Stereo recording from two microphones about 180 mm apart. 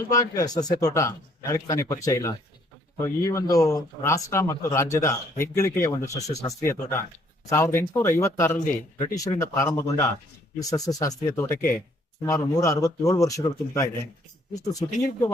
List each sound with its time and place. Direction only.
0.3 s a man's voice: 20° left (ahead or behind)